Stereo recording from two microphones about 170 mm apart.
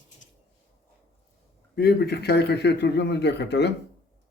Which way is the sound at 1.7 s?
70° left (ahead or behind).